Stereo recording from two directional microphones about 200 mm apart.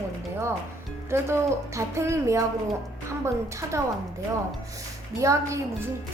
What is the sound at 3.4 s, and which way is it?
Music, 15° right (ahead or behind).